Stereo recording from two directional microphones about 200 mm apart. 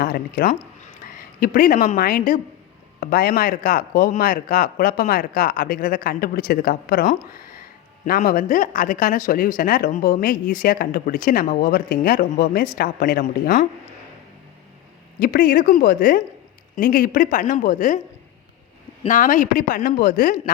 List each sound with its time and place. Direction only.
0.0 s speech: 45° left (ahead or behind)
15.2 s speech: 45° left (ahead or behind)
19.0 s speech: 40° left (ahead or behind)